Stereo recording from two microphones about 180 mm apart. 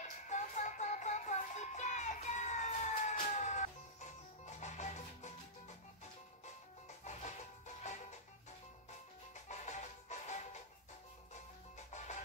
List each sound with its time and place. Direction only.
0.3 s music: 45° left (ahead or behind)
7.1 s music: 40° left (ahead or behind)
9.5 s music: 40° left (ahead or behind)